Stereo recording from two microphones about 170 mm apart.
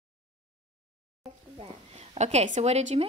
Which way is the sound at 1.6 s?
40° right (ahead or behind).